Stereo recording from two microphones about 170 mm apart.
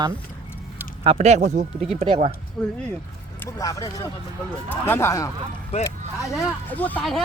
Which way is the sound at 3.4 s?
20° left (ahead or behind).